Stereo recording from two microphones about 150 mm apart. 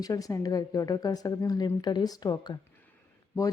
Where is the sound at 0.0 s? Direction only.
25° left (ahead or behind).